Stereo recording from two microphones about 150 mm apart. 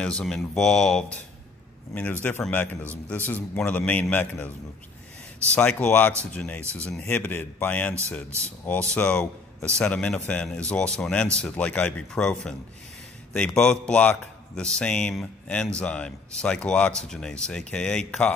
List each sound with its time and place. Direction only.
0.0 s speech: 5° left (ahead or behind)
2.2 s a man's voice: 10° left (ahead or behind)
5.5 s a man's voice: 5° left (ahead or behind)